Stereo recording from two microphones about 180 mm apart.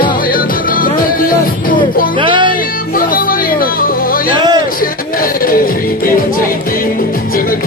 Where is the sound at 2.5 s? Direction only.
50° left (ahead or behind).